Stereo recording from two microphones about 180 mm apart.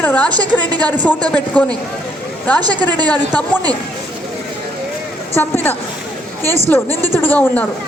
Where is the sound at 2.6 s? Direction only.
20° right (ahead or behind).